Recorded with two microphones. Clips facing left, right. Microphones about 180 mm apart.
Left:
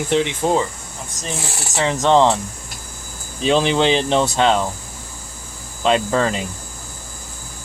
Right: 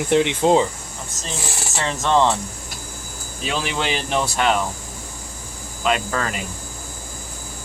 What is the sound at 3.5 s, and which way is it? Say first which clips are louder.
Speech: left 9 dB; 25° left (ahead or behind).